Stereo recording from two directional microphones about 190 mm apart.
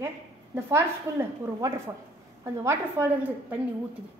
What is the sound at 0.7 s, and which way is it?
A woman's voice, 15° right (ahead or behind).